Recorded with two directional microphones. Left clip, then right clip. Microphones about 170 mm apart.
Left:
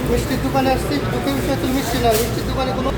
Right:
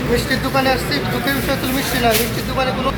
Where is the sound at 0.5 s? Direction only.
5° right (ahead or behind).